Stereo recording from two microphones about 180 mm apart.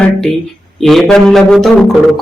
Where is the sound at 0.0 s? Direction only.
Centre (ahead or behind).